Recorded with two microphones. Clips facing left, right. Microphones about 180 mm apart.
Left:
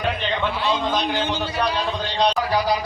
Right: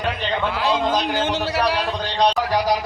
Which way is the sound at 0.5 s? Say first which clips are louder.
Right 2 dB; 90° right.